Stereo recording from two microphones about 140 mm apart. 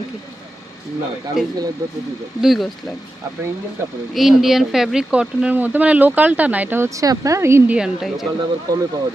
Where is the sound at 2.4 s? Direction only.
Centre (ahead or behind).